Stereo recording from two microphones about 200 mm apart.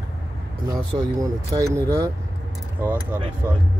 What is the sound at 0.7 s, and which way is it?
Speech, 15° right (ahead or behind).